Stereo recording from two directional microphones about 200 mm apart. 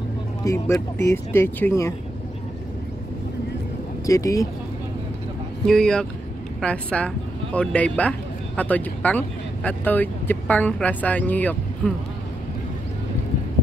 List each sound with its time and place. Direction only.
0.4 s speech: 15° left (ahead or behind)
4.0 s speech: 15° left (ahead or behind)
5.7 s speech: 5° left (ahead or behind)